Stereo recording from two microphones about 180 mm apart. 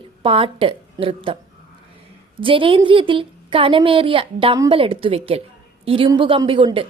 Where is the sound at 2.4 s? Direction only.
30° right (ahead or behind).